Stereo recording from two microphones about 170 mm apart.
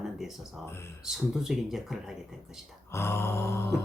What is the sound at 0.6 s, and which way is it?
Mantra, 15° left (ahead or behind).